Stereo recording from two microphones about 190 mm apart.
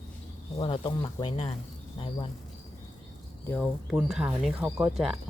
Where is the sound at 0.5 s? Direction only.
25° left (ahead or behind).